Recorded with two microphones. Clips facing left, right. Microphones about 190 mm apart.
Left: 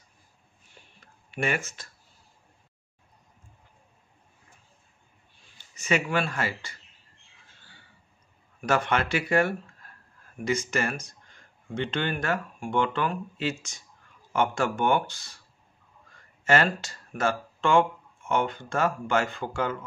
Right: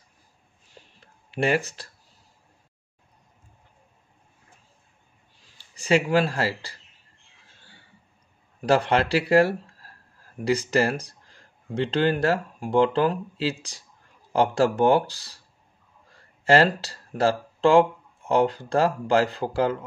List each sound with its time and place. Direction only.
0.7 s a sound: 30° right (ahead or behind)
5.6 s speech: 30° right (ahead or behind)
8.5 s speech: 35° right (ahead or behind)